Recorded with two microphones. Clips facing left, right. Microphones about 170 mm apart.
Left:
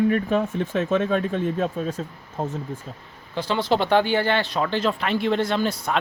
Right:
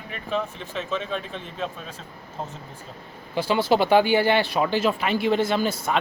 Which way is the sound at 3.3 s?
10° right (ahead or behind).